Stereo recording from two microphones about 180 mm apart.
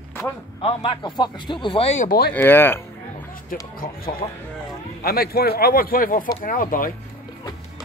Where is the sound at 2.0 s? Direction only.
60° left (ahead or behind).